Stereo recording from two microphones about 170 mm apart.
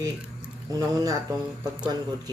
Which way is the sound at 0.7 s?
20° right (ahead or behind).